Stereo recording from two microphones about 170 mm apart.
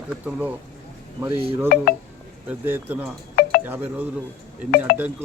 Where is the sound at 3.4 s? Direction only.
60° left (ahead or behind).